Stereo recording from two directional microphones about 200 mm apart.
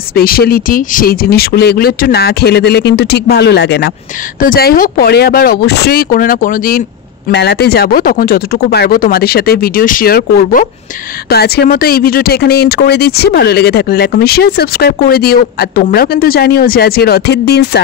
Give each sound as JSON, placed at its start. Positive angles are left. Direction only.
{"t": 0.1, "sound": "speech", "side_deg": 50}
{"t": 7.2, "sound": "speech", "side_deg": 55}